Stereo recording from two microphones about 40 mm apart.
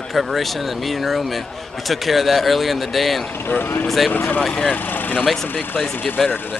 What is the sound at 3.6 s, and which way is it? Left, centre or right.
Speech, left.